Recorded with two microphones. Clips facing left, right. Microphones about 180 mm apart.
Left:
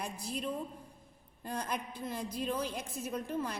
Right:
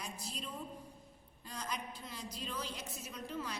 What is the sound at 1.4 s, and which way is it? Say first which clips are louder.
A woman's voice: left 6 dB; 55° left (ahead or behind).